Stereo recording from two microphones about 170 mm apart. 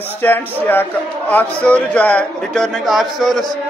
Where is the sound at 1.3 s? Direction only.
10° left (ahead or behind).